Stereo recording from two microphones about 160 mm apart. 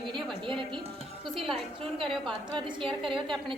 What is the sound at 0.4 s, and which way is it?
Speech, 30° right (ahead or behind).